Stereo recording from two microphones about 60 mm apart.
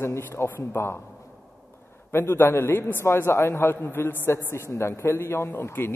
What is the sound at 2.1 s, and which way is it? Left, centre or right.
A man's voice, left.